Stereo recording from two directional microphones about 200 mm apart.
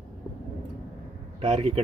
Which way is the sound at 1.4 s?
25° right (ahead or behind).